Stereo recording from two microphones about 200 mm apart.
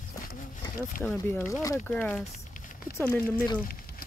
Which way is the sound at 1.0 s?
5° left (ahead or behind).